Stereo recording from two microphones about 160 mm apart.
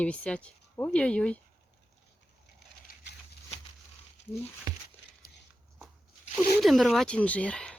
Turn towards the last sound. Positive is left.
turn(degrees=5)  # may be behind; listen again after turning